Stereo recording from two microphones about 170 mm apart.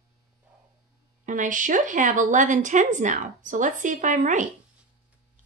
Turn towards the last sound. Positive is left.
turn(degrees=-50)  # may be behind; listen again after turning